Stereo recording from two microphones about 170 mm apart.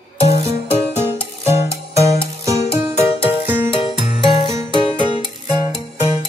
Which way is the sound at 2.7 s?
15° right (ahead or behind).